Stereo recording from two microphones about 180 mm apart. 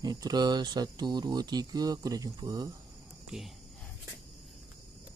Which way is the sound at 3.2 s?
Centre (ahead or behind).